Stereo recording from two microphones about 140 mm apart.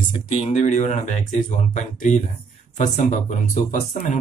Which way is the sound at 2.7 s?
60° left (ahead or behind).